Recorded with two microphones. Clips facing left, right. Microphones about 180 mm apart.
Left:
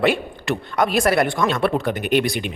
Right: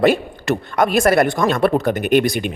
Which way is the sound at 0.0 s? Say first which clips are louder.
Right 4 dB; 40° right (ahead or behind).